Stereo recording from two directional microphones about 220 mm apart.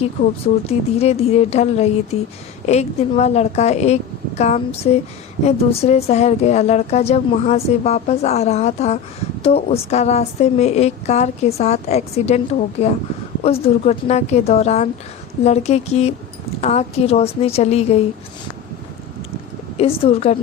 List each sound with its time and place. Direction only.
0.0 s a woman's voice: 30° left (ahead or behind)
19.7 s a woman's voice: 25° left (ahead or behind)